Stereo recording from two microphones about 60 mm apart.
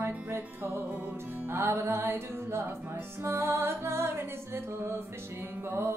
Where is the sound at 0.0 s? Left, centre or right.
Right.